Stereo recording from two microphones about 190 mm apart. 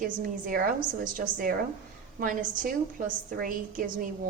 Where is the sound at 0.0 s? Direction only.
45° right (ahead or behind).